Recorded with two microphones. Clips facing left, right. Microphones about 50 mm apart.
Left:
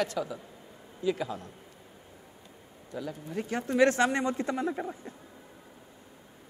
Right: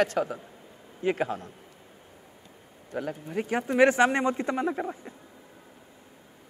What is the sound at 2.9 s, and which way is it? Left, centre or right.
Speech, right.